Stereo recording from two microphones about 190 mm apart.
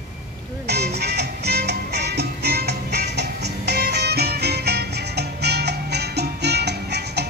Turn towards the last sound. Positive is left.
turn(degrees=-60)  # may be behind; listen again after turning